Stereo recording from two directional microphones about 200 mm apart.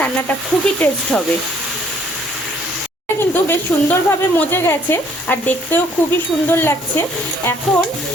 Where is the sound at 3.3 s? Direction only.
10° left (ahead or behind).